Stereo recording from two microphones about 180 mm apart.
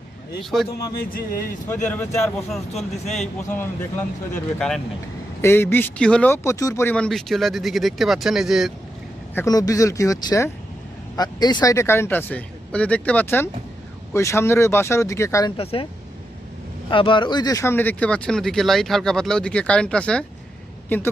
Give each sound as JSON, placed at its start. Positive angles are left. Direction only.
{"t": 0.7, "sound": "speech", "side_deg": 55}
{"t": 1.9, "sound": "speech", "side_deg": 5}
{"t": 5.4, "sound": "speech", "side_deg": 15}
{"t": 9.3, "sound": "speech", "side_deg": 15}
{"t": 15.5, "sound": "speech", "side_deg": 30}
{"t": 16.9, "sound": "speech", "side_deg": 30}